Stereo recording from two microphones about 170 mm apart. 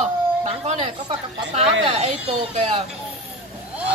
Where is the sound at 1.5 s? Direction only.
40° right (ahead or behind).